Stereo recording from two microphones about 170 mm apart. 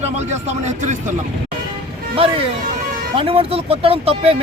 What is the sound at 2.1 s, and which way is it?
Speech, 35° right (ahead or behind).